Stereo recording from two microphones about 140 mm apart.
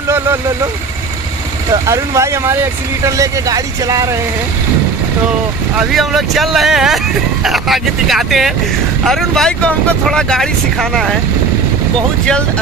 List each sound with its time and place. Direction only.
1.7 s speech: 20° right (ahead or behind)
5.8 s speech: centre (ahead or behind)